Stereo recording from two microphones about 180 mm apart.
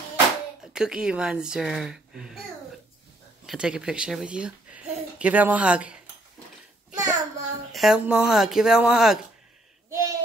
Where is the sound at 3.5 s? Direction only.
5° right (ahead or behind).